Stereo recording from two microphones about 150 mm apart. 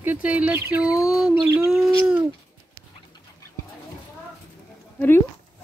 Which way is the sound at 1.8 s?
5° right (ahead or behind).